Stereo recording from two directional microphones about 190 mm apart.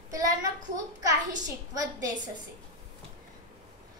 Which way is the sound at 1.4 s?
20° right (ahead or behind).